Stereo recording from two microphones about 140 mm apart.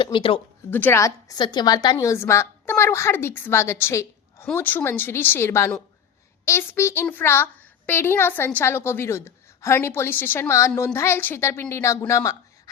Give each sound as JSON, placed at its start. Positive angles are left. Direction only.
{"t": 0.0, "sound": "speech", "side_deg": 40}
{"t": 0.7, "sound": "a child's voice", "side_deg": 15}
{"t": 1.4, "sound": "a woman's voice", "side_deg": 30}